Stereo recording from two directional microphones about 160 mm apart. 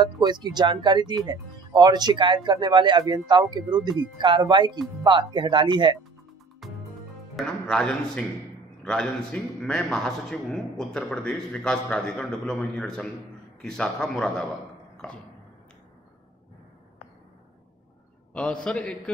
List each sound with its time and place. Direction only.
0.0 s speech: 25° right (ahead or behind)
6.6 s music: centre (ahead or behind)
7.3 s a man's voice: 5° left (ahead or behind)
18.3 s a man's voice: 5° left (ahead or behind)